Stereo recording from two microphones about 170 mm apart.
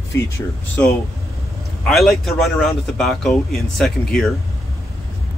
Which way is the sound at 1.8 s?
Centre (ahead or behind).